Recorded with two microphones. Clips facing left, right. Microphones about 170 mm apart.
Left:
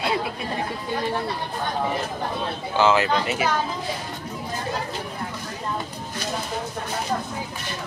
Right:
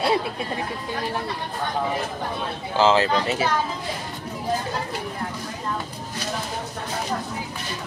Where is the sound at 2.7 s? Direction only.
30° right (ahead or behind).